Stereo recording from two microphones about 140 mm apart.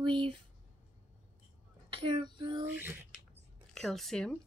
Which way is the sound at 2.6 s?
15° right (ahead or behind).